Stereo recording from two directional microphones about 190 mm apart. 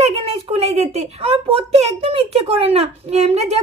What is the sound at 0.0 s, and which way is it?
Speech, 30° right (ahead or behind).